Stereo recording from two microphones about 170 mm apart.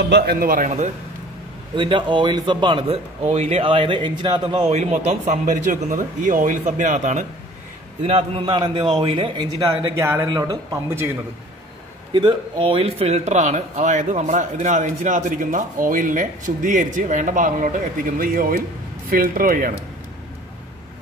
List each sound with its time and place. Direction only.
0.1 s a man's voice: 65° right (ahead or behind)
1.8 s a man's voice: 30° right (ahead or behind)
8.4 s a man's voice: 30° right (ahead or behind)
9.9 s speech: 15° right (ahead or behind)
12.1 s a man's voice: 30° right (ahead or behind); by 19.7 s 55° right (ahead or behind)